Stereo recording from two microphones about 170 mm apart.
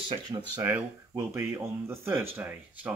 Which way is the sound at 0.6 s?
15° right (ahead or behind).